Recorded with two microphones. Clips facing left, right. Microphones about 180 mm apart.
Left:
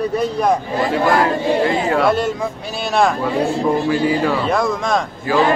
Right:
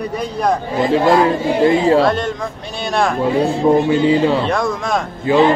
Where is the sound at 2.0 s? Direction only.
5° left (ahead or behind).